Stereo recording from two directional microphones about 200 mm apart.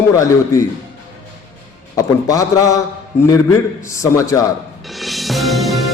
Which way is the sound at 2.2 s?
15° left (ahead or behind).